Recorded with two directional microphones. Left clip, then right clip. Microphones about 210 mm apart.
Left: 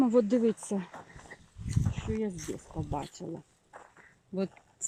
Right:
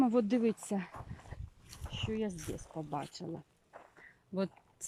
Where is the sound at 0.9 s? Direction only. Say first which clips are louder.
Left 3 dB; 30° left (ahead or behind).